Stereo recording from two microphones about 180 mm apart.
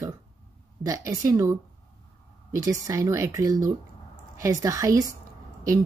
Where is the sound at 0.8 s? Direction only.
20° right (ahead or behind).